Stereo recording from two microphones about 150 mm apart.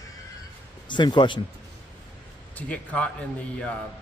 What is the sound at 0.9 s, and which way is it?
Speech, 30° left (ahead or behind).